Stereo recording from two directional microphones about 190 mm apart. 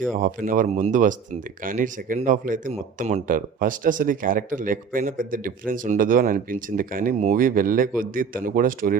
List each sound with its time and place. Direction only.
0.2 s speech: 45° right (ahead or behind)